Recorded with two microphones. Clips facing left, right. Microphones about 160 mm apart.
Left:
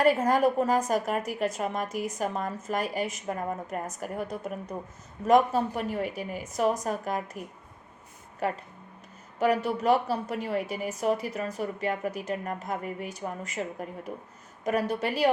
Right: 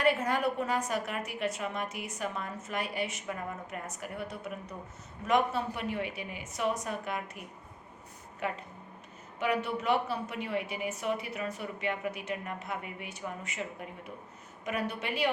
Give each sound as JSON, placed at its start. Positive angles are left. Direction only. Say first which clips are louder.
{"t": 0.0, "sound": "a woman's voice", "louder": "left 6 dB", "side_deg": 40}